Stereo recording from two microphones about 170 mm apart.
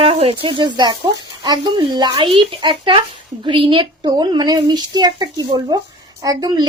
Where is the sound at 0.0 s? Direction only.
35° right (ahead or behind).